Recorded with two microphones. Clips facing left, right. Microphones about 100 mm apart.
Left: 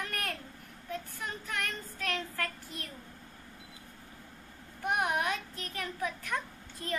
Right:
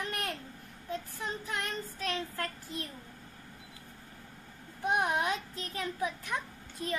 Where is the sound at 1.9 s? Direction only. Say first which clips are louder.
Left 1 dB; 20° right (ahead or behind).